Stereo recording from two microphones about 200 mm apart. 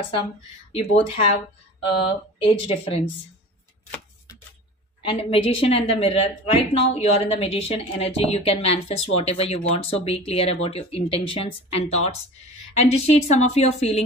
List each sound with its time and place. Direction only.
0.7 s a woman's voice: 30° left (ahead or behind)
5.0 s a woman's voice: 30° left (ahead or behind)